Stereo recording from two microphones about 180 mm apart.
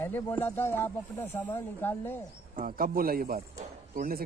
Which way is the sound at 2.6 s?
50° right (ahead or behind).